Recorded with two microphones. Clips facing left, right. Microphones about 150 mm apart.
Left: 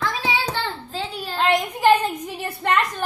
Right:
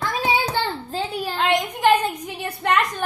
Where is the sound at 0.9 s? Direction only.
45° right (ahead or behind).